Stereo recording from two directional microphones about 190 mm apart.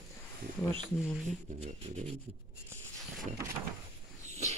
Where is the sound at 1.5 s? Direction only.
35° right (ahead or behind).